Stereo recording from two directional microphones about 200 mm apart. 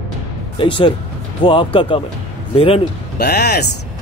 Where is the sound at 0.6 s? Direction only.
25° left (ahead or behind).